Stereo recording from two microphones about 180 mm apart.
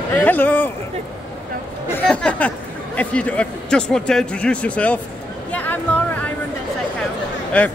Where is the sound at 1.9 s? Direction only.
5° left (ahead or behind).